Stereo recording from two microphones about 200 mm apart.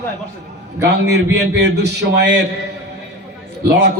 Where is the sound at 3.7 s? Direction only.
55° right (ahead or behind).